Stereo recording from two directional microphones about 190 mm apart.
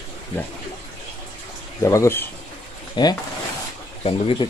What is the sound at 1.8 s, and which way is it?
Speech, 15° left (ahead or behind).